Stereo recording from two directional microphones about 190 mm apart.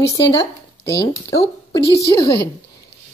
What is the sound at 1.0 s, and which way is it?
Speech, 20° left (ahead or behind).